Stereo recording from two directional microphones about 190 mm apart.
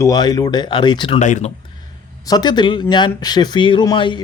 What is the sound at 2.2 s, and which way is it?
Speech, 20° left (ahead or behind).